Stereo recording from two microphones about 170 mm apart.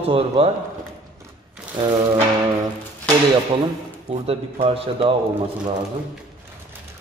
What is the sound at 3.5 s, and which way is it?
A man's voice, 30° right (ahead or behind).